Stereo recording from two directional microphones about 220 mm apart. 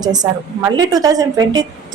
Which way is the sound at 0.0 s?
20° right (ahead or behind).